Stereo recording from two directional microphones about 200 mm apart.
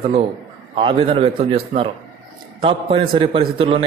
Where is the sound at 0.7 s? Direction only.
25° right (ahead or behind).